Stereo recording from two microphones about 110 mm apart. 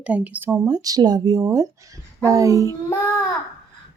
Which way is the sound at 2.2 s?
30° right (ahead or behind).